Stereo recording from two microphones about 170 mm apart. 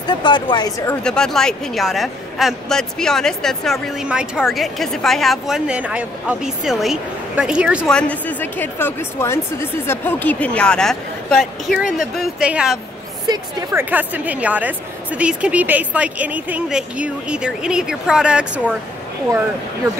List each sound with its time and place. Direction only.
0.0 s speech: 25° left (ahead or behind)
1.0 s speech: 5° left (ahead or behind)
7.9 s speech: 10° left (ahead or behind)
13.3 s a woman's voice: 20° right (ahead or behind)
13.8 s a woman's voice: 10° right (ahead or behind)